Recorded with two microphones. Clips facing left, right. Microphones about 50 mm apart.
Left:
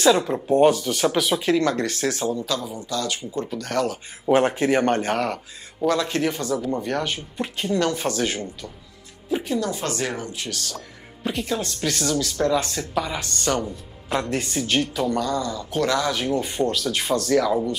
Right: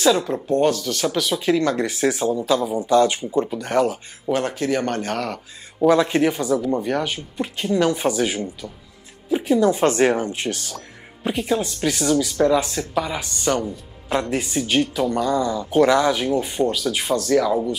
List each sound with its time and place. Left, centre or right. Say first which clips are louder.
0.1 s speech: left 1 dB; centre
1.8 s speech: right 4 dB; centre
2.9 s speech: right 11 dB; right
4.3 s speech: left 3 dB; left
5.1 s speech: left 2 dB; centre
5.8 s speech: right 6 dB; centre
7.7 s speech: right 4 dB; centre
9.4 s speech: right 13 dB; right
12.6 s speech: right 2 dB; centre
15.2 s speech: right 5 dB; centre
16.4 s speech: right 2 dB; centre